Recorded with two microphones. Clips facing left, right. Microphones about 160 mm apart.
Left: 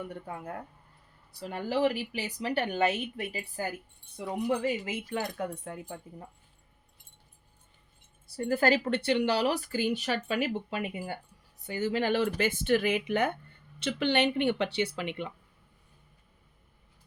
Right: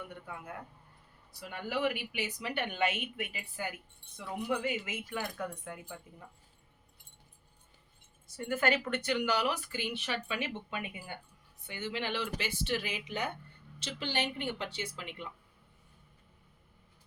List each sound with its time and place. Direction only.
0.1 s speech: 40° left (ahead or behind)
8.4 s speech: 35° left (ahead or behind); by 15.3 s 70° left (ahead or behind)